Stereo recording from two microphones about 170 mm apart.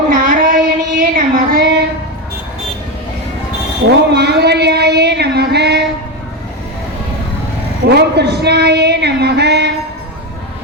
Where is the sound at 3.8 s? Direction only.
75° right (ahead or behind).